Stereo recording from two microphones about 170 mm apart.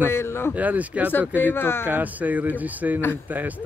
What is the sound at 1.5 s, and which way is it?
Speech, 15° left (ahead or behind).